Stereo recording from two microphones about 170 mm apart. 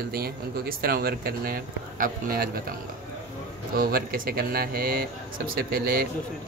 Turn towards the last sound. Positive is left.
turn(degrees=-65)  # may be behind; listen again after turning